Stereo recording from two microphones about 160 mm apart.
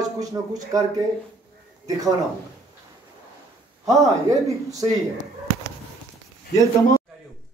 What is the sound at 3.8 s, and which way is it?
A man's voice, 20° right (ahead or behind).